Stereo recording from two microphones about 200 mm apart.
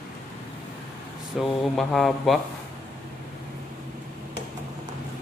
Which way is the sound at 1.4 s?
Centre (ahead or behind).